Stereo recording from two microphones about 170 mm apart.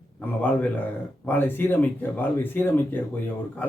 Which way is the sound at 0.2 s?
10° left (ahead or behind).